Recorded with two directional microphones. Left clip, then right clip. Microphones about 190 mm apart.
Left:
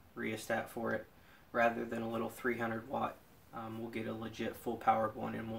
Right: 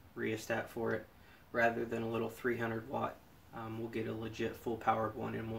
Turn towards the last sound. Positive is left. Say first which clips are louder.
# left 2 dB
turn(degrees=15)  # may be behind; listen again after turning